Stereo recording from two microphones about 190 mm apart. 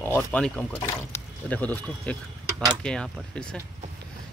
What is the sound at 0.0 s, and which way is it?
Speech, 10° left (ahead or behind).